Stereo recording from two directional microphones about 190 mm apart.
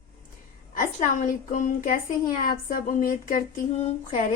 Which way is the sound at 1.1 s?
45° left (ahead or behind).